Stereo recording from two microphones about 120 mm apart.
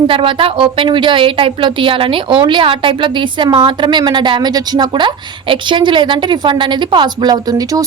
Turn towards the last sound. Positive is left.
turn(degrees=-35)  # may be behind; listen again after turning